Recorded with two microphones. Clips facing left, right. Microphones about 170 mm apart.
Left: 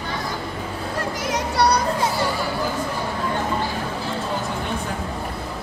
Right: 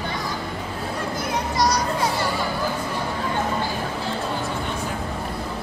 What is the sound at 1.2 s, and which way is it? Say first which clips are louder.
Children playing: left 2 dB; 80° left.